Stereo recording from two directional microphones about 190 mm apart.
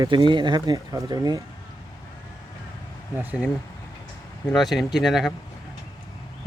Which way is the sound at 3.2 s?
5° right (ahead or behind).